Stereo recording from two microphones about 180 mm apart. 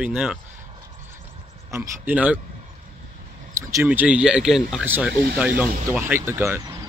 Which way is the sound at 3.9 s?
5° right (ahead or behind).